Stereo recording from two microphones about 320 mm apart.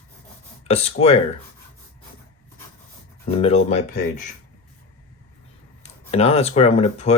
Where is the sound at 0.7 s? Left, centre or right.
Centre.